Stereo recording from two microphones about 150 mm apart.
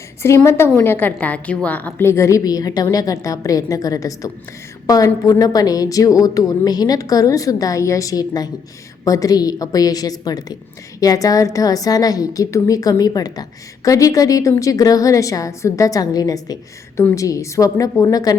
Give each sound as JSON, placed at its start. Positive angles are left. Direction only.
{"t": 0.2, "sound": "a woman's voice", "side_deg": 15}